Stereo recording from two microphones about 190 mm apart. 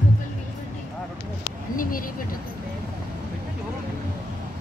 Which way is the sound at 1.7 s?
45° left (ahead or behind).